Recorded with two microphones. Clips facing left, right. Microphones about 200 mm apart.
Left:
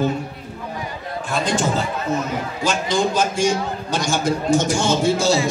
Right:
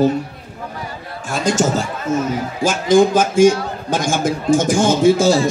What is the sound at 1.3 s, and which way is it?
A man's voice, 45° right (ahead or behind).